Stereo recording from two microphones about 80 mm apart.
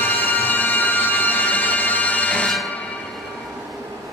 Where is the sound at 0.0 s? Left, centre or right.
Left.